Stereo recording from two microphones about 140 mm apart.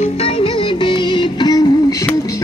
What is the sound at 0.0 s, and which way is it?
Music, 40° left (ahead or behind).